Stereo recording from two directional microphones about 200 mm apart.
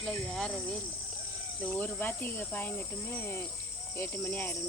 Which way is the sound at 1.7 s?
10° left (ahead or behind).